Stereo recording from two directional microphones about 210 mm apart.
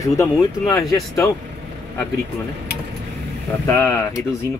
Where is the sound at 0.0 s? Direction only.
15° left (ahead or behind).